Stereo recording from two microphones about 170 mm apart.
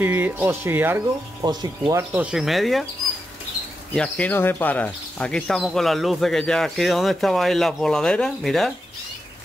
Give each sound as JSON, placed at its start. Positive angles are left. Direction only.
{"t": 0.0, "sound": "speech", "side_deg": -10}
{"t": 1.4, "sound": "speech", "side_deg": -25}
{"t": 2.3, "sound": "speech", "side_deg": 0}
{"t": 3.9, "sound": "speech", "side_deg": 5}